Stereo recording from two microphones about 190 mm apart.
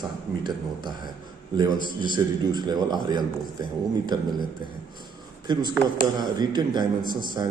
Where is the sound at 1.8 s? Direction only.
45° left (ahead or behind).